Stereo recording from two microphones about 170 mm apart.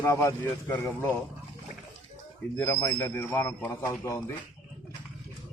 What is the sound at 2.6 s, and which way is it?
Speech, 20° left (ahead or behind).